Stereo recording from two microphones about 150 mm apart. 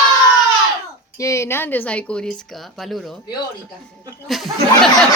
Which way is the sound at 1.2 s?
20° left (ahead or behind).